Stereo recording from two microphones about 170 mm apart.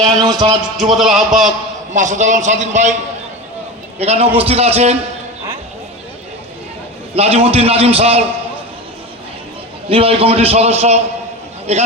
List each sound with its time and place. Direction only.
0.1 s a man's voice: centre (ahead or behind)
1.9 s a man's voice: 45° right (ahead or behind)
3.9 s a man's voice: 40° right (ahead or behind)
7.1 s a man's voice: 35° right (ahead or behind)
9.9 s a man's voice: 35° right (ahead or behind)